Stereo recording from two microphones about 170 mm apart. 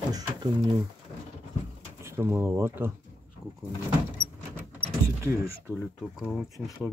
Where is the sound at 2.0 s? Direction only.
15° right (ahead or behind).